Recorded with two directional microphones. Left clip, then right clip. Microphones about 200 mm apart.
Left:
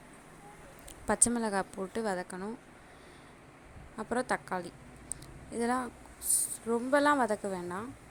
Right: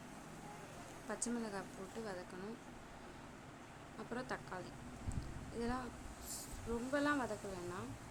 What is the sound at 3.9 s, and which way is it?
A woman's voice, 40° left (ahead or behind).